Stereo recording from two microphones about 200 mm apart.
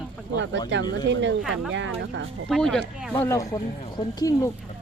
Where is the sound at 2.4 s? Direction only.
5° left (ahead or behind).